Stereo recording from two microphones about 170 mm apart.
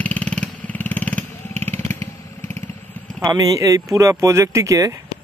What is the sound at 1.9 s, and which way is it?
Motorcycle, 15° left (ahead or behind).